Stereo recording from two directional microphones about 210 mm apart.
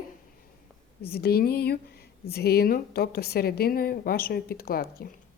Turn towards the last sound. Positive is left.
turn(degrees=45)  # may be behind; listen again after turning